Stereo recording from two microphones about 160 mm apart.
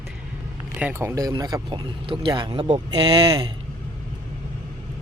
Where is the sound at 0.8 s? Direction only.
15° right (ahead or behind).